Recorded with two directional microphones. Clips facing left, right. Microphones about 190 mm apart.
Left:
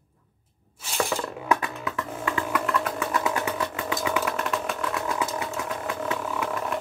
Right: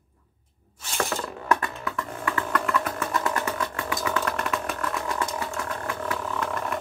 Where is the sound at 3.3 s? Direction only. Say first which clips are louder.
Left 1 dB; 15° left (ahead or behind).